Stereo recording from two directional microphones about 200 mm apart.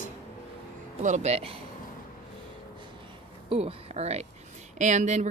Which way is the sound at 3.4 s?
30° right (ahead or behind).